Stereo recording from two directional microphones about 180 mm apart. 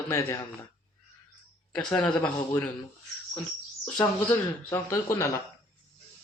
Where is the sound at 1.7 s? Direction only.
5° left (ahead or behind).